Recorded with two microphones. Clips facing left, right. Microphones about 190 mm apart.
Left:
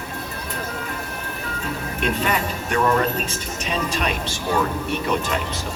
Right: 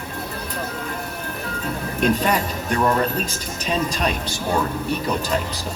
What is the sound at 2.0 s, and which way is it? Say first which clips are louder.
Speech: right 4 dB; 35° right (ahead or behind).